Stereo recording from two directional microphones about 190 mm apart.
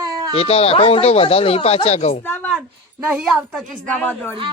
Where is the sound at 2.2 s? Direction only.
10° left (ahead or behind).